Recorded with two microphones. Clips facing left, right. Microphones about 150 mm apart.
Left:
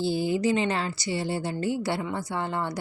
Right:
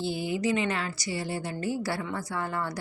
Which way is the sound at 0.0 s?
30° left (ahead or behind).